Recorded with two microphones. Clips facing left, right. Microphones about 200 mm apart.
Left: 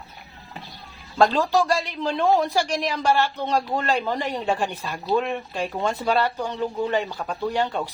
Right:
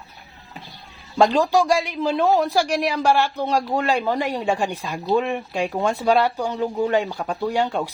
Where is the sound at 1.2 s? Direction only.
15° right (ahead or behind).